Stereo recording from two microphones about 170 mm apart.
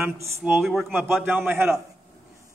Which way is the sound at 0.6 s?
Centre (ahead or behind).